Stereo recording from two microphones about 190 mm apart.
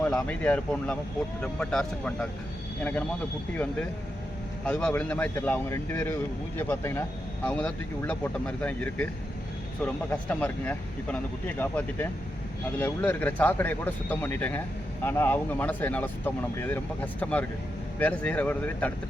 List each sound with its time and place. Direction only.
0.0 s speech: 10° left (ahead or behind)
4.6 s speech: 5° left (ahead or behind)